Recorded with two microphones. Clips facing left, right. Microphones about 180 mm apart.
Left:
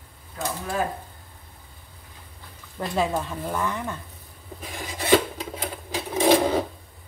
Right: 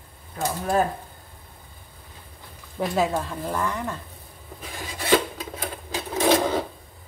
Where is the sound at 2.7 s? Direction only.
5° right (ahead or behind).